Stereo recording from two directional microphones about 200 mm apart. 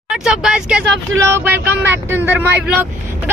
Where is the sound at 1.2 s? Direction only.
10° right (ahead or behind).